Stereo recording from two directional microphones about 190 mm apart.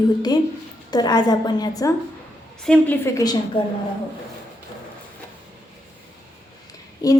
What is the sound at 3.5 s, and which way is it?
Speech, 25° left (ahead or behind).